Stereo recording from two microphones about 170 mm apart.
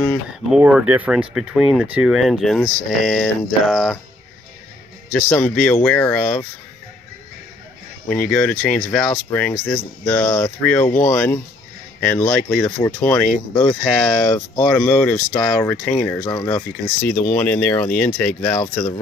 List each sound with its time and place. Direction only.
0.0 s speech: centre (ahead or behind)
5.1 s speech: 5° left (ahead or behind)
8.3 s speech: 5° left (ahead or behind)
14.2 s speech: 25° left (ahead or behind)
14.8 s speech: 10° left (ahead or behind)